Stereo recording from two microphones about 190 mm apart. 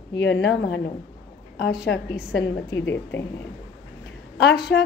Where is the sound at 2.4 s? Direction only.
15° left (ahead or behind).